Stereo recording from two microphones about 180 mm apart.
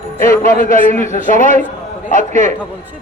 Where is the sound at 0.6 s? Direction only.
50° left (ahead or behind).